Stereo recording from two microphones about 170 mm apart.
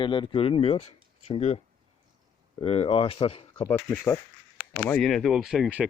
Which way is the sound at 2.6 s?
35° left (ahead or behind).